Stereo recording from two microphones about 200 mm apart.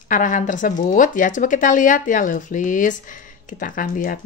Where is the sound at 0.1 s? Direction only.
40° left (ahead or behind).